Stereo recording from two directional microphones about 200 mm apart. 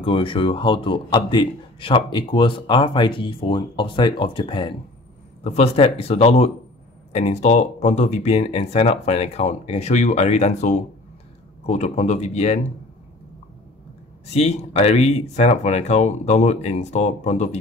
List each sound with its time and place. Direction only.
0.0 s a man's voice: 25° left (ahead or behind)
14.3 s speech: 35° left (ahead or behind)